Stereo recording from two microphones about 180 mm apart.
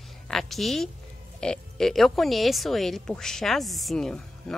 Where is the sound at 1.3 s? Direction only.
5° left (ahead or behind).